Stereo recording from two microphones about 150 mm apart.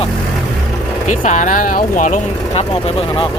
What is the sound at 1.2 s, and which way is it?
Speech, 55° left (ahead or behind).